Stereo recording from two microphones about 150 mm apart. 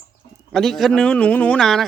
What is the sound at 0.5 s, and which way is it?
Speech, centre (ahead or behind).